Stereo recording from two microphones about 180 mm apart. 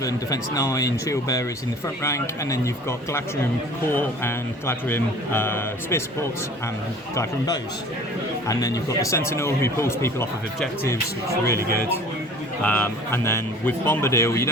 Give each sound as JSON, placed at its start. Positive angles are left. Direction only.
{"t": 0.0, "sound": "speech", "side_deg": 20}
{"t": 7.2, "sound": "speech", "side_deg": 20}
{"t": 11.4, "sound": "speech", "side_deg": 15}